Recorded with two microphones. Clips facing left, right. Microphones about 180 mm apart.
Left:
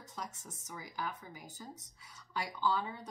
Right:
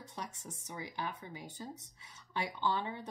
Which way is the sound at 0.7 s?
25° right (ahead or behind).